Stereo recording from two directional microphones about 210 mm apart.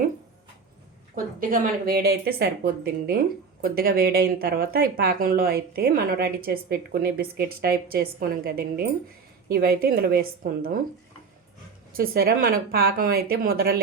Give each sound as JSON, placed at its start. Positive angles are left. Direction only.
{"t": 1.1, "sound": "speech", "side_deg": -40}
{"t": 11.9, "sound": "speech", "side_deg": -45}